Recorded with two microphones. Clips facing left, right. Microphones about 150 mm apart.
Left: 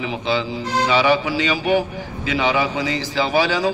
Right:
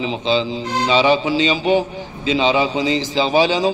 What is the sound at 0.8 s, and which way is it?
A man's voice, 20° right (ahead or behind).